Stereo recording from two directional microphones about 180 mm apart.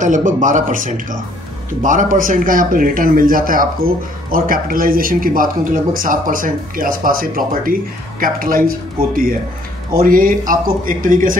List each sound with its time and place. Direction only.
0.0 s speech: 45° right (ahead or behind)